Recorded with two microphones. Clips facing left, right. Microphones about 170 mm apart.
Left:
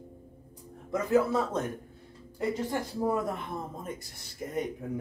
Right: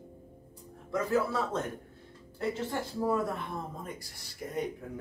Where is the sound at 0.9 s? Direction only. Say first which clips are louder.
Left 4 dB; 20° left (ahead or behind).